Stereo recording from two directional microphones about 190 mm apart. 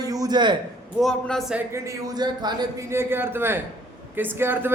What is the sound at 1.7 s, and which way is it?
A man's voice, 15° right (ahead or behind).